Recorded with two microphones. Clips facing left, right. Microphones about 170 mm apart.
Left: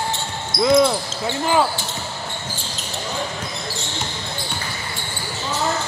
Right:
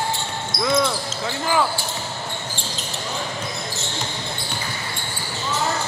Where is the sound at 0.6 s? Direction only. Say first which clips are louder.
Left 6 dB; 25° left (ahead or behind).